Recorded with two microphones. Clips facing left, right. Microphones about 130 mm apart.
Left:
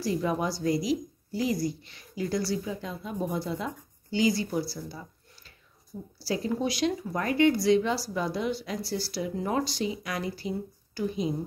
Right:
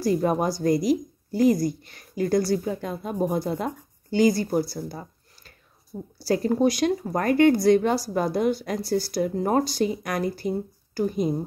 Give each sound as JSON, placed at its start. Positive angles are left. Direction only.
{"t": 0.0, "sound": "speech", "side_deg": -45}